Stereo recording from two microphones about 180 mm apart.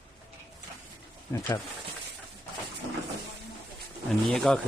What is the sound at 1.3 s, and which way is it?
Speech, 20° left (ahead or behind).